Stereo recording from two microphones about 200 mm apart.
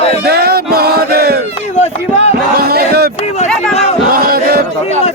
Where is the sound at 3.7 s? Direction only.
30° left (ahead or behind).